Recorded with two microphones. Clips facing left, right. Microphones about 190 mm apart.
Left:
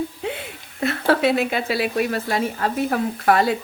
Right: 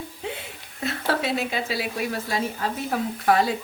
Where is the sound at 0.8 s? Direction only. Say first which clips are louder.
Left 7 dB; 65° left (ahead or behind).